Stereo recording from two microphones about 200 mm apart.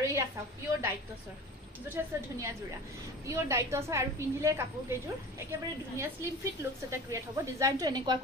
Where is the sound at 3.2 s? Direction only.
15° right (ahead or behind).